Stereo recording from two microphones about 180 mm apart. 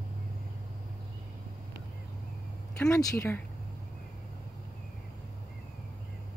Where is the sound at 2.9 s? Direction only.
15° left (ahead or behind).